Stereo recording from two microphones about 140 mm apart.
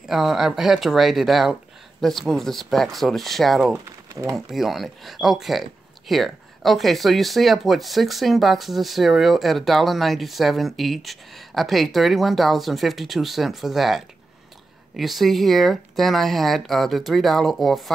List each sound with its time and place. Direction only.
0.1 s speech: centre (ahead or behind)